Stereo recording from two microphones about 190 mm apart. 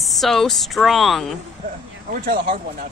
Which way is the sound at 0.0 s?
Centre (ahead or behind).